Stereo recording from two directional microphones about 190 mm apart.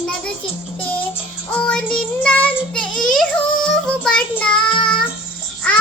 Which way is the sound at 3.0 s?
Centre (ahead or behind).